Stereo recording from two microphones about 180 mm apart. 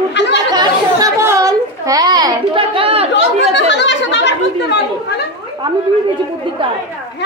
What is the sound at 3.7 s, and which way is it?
Chatter, 75° left (ahead or behind).